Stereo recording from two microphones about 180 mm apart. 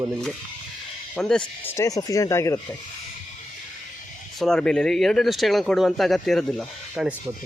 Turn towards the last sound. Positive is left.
turn(degrees=0)  # may be behind; listen again after turning